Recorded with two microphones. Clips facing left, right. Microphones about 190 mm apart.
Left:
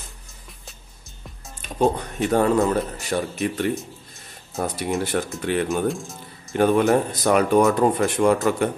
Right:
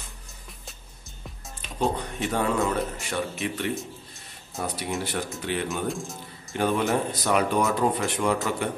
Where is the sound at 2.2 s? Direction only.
40° left (ahead or behind).